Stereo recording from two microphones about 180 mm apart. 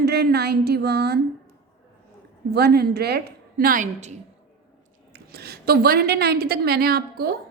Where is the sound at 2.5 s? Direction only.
60° right (ahead or behind).